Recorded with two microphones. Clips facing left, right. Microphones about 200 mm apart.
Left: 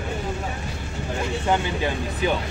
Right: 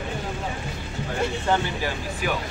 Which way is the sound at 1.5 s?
20° left (ahead or behind).